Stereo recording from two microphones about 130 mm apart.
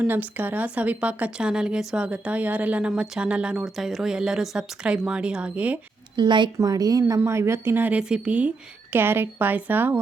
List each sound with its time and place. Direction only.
0.0 s a woman's voice: 15° right (ahead or behind)
6.1 s a woman's voice: 35° right (ahead or behind); by 10.0 s 15° right (ahead or behind)